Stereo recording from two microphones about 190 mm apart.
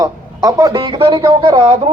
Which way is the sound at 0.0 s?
20° right (ahead or behind).